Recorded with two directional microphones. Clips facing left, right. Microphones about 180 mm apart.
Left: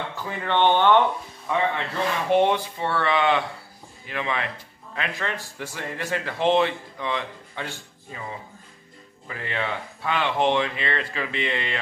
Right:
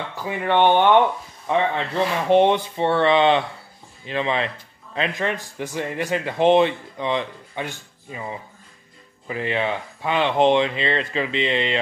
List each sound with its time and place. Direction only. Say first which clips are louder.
0.2 s speech: right 4 dB; 15° right (ahead or behind)
1.5 s speech: right 3 dB; 25° right (ahead or behind)
9.3 s speech: right 6 dB; 20° right (ahead or behind)